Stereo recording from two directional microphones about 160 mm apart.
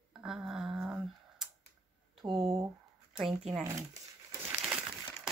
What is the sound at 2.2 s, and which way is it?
Speech, 25° right (ahead or behind).